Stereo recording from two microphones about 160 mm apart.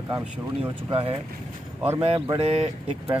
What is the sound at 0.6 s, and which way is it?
Speech, 35° right (ahead or behind).